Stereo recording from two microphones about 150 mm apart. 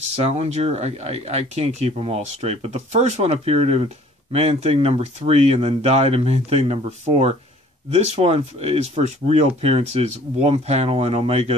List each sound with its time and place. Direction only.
0.1 s speech: 45° right (ahead or behind)